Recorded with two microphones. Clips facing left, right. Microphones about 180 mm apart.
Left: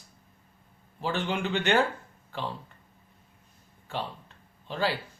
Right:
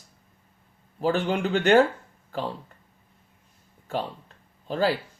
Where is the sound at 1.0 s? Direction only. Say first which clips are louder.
Right 6 dB; 40° right (ahead or behind).